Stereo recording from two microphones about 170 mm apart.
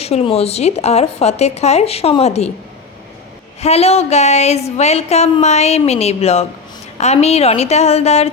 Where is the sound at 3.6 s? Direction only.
35° left (ahead or behind).